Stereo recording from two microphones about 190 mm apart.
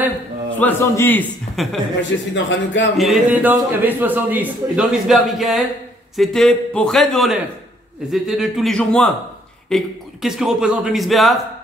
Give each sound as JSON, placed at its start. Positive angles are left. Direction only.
{"t": 0.6, "sound": "a man's voice", "side_deg": 10}
{"t": 1.6, "sound": "a man's voice", "side_deg": 0}
{"t": 2.0, "sound": "a man's voice", "side_deg": 70}
{"t": 3.0, "sound": "a man's voice", "side_deg": -5}